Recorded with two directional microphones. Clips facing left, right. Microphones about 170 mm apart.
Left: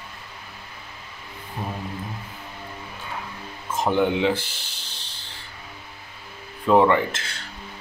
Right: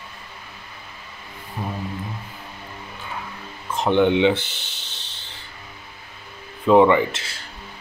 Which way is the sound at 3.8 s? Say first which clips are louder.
Right 4 dB; 5° left (ahead or behind).